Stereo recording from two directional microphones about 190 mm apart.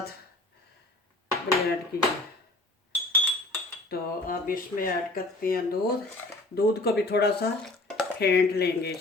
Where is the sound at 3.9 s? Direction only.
50° left (ahead or behind).